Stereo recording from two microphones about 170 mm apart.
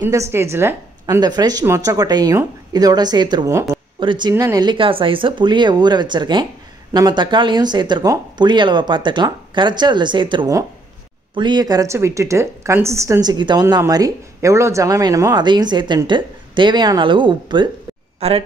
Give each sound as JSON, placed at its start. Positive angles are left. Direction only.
{"t": 0.0, "sound": "a woman's voice", "side_deg": -15}
{"t": 4.0, "sound": "a woman's voice", "side_deg": -25}